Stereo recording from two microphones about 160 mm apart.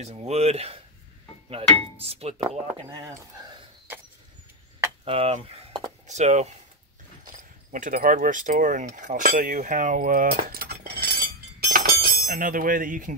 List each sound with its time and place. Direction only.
0.0 s speech: 40° right (ahead or behind)
5.0 s speech: 35° right (ahead or behind)
7.2 s speech: 60° right (ahead or behind)
8.9 s cutlery: 60° right (ahead or behind)